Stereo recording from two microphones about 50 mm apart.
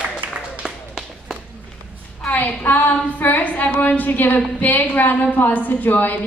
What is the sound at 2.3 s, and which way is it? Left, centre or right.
A woman's voice, left.